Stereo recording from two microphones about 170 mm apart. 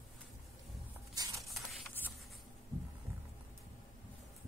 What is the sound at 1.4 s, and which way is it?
Printer, centre (ahead or behind).